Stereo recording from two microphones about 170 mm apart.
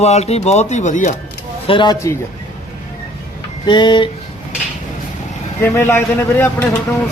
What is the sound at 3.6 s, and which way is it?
Speech, 25° left (ahead or behind).